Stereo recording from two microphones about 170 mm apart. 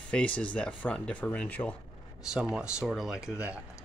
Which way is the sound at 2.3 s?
5° right (ahead or behind).